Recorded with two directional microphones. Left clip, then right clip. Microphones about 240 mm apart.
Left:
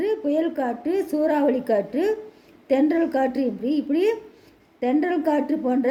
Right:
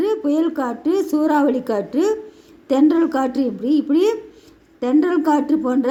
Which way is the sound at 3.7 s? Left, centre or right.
Right.